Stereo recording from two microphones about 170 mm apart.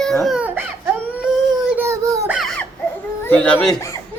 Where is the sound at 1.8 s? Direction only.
15° right (ahead or behind).